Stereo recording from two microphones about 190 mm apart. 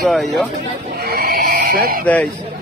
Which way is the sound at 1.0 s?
50° right (ahead or behind).